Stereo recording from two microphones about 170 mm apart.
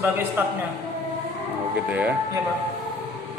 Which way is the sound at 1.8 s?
10° right (ahead or behind).